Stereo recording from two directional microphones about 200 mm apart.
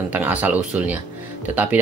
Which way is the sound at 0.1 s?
10° right (ahead or behind).